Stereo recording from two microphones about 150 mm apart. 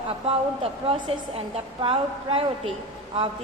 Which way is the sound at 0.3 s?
40° right (ahead or behind).